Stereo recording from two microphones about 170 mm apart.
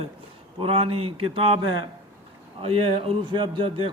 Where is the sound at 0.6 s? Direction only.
35° right (ahead or behind).